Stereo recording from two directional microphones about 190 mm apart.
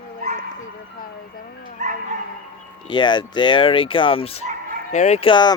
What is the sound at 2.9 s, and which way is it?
Speech, 25° left (ahead or behind).